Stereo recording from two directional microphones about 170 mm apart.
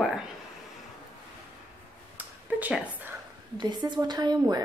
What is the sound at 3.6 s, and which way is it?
A woman's voice, 25° right (ahead or behind).